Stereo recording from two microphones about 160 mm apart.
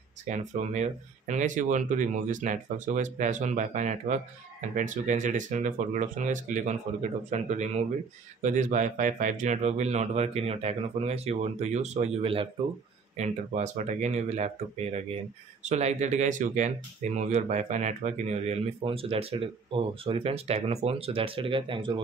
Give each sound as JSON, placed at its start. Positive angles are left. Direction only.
{"t": 0.2, "sound": "speech", "side_deg": -50}